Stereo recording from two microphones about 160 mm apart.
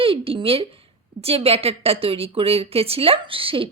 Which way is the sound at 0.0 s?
35° right (ahead or behind).